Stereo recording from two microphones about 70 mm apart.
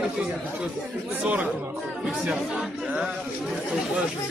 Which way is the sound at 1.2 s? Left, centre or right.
Centre.